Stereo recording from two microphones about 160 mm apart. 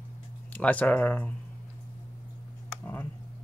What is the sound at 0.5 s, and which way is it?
Speech, 10° left (ahead or behind).